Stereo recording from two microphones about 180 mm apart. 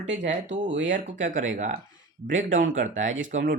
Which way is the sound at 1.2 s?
45° right (ahead or behind).